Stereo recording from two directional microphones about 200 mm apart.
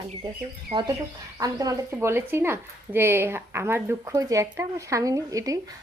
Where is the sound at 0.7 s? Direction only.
25° right (ahead or behind).